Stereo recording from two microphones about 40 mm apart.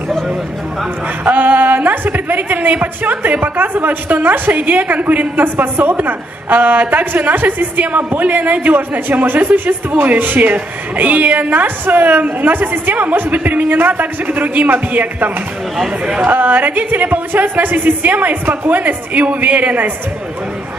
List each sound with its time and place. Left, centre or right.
1.3 s speech: right